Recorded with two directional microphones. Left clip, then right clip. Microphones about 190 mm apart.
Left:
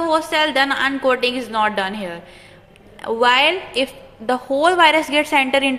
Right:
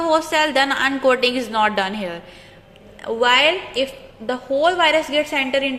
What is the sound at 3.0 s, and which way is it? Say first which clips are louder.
A woman's voice: left 1 dB; 10° left (ahead or behind).